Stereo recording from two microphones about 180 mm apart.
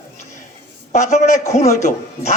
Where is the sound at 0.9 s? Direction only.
40° left (ahead or behind).